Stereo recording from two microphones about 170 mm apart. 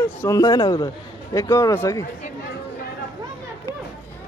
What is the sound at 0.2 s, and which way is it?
A man's voice, 20° left (ahead or behind).